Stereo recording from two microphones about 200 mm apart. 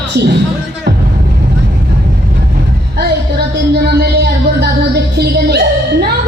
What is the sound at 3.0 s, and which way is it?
Music, 55° right (ahead or behind).